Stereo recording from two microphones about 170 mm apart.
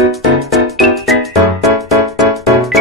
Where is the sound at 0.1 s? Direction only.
Centre (ahead or behind).